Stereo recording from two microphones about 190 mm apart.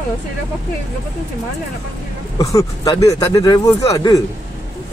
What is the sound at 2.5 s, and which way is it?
Speech, 20° left (ahead or behind).